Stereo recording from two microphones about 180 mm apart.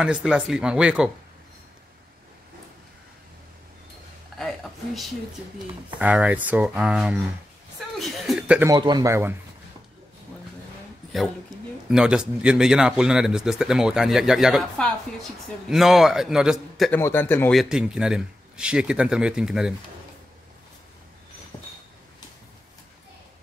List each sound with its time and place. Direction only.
0.0 s speech: 5° right (ahead or behind)
5.9 s speech: 10° right (ahead or behind)
8.6 s speech: 25° right (ahead or behind)
11.9 s speech: 5° right (ahead or behind)
16.9 s speech: 10° left (ahead or behind)
17.6 s speech: 5° right (ahead or behind)